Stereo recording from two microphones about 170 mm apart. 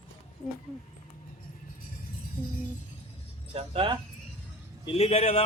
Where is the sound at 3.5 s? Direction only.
30° right (ahead or behind).